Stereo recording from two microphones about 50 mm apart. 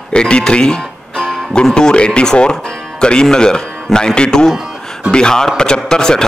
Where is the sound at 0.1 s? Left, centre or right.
Centre.